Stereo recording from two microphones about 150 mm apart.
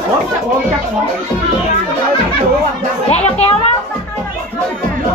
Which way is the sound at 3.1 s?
45° left (ahead or behind).